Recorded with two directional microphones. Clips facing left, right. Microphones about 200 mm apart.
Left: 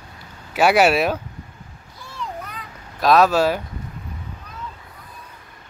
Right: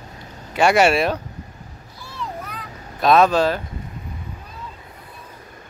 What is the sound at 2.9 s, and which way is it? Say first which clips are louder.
Speech: even; centre (ahead or behind).